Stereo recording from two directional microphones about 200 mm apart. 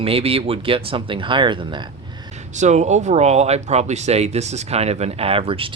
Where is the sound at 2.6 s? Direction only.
35° right (ahead or behind).